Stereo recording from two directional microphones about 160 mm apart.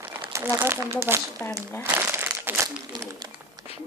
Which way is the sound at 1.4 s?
15° left (ahead or behind).